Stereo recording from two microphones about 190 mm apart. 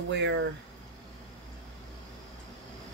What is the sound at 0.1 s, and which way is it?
Speech, 70° right (ahead or behind).